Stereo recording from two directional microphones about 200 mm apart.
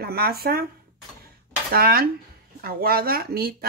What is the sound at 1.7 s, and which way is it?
Speech, 50° right (ahead or behind).